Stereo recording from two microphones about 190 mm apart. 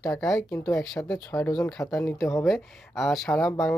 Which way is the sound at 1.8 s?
15° left (ahead or behind).